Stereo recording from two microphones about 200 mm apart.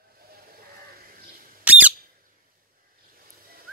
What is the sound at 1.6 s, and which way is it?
Squeak, 5° right (ahead or behind).